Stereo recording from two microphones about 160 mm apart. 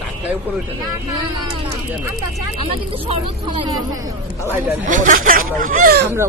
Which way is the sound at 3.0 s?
35° right (ahead or behind).